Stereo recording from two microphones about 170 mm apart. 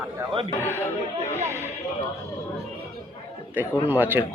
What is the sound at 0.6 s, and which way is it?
Chatter, 15° right (ahead or behind).